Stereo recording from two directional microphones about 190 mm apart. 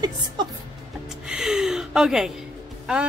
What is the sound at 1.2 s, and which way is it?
Gasp, 5° right (ahead or behind).